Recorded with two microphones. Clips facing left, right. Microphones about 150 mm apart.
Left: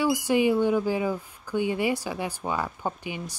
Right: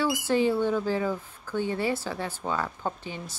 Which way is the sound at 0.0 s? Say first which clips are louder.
Left 2 dB; 15° left (ahead or behind).